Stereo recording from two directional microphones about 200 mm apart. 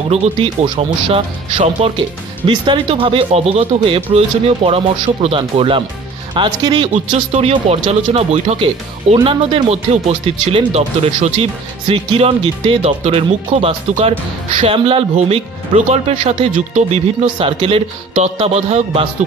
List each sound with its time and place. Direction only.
0.1 s speech: 30° right (ahead or behind)